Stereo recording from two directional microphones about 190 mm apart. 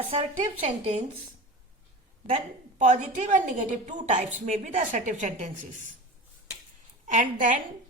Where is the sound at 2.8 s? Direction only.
40° right (ahead or behind).